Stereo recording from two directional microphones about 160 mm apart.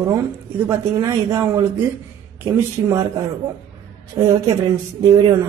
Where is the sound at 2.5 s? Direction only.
25° right (ahead or behind).